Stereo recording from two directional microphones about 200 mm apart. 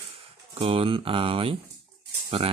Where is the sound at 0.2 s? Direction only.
30° right (ahead or behind).